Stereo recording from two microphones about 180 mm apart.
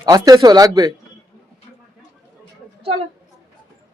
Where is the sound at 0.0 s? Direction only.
20° right (ahead or behind).